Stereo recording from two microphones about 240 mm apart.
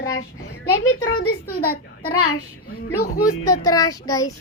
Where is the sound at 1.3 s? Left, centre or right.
Left.